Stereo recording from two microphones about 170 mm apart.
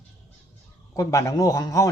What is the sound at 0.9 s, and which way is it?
Speech, 20° left (ahead or behind).